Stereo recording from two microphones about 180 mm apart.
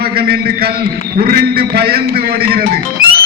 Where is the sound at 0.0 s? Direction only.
60° right (ahead or behind).